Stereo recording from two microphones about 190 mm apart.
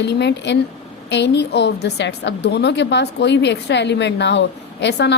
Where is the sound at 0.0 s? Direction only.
65° left (ahead or behind).